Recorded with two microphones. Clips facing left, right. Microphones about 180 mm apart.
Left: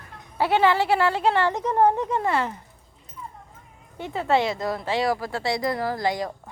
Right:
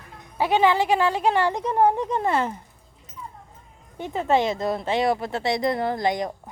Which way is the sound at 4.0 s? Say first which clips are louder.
Right 1 dB; 15° right (ahead or behind).